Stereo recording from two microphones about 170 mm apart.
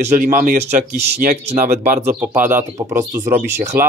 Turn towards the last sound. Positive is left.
turn(degrees=-15)  # may be behind; listen again after turning